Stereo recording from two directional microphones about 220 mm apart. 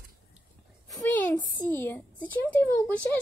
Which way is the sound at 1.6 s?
10° left (ahead or behind).